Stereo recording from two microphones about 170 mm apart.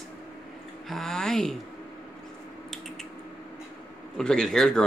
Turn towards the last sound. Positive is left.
turn(degrees=5)  # may be behind; listen again after turning